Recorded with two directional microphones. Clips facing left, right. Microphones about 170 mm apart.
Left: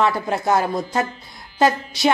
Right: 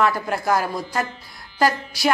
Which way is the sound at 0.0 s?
25° left (ahead or behind).